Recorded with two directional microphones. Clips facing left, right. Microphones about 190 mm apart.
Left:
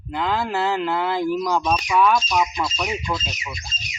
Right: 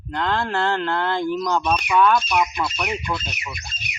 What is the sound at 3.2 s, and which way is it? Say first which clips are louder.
Speech: left 1 dB; 60° right (ahead or behind).